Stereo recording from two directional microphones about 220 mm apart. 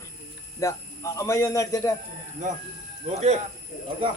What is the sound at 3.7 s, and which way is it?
Bird, 40° left (ahead or behind).